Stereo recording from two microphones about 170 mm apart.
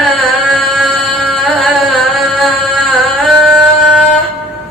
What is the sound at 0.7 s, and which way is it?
Music, centre (ahead or behind).